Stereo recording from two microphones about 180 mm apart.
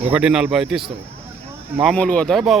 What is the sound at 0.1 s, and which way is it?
Speech, 5° right (ahead or behind).